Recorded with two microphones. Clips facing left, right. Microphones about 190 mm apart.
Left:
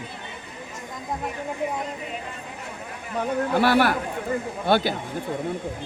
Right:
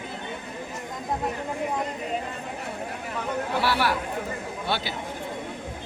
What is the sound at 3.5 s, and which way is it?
Speech, 50° left (ahead or behind).